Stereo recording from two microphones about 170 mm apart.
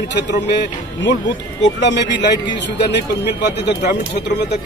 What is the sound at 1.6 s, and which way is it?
Speech, 90° left.